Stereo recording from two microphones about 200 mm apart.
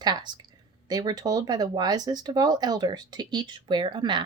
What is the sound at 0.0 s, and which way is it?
Speech, 20° right (ahead or behind).